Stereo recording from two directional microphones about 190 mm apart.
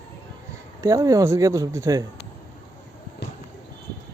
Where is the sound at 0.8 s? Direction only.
20° right (ahead or behind).